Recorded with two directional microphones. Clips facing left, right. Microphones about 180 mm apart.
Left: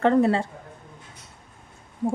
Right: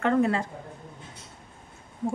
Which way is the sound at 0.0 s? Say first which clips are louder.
Left 4 dB; 35° left (ahead or behind).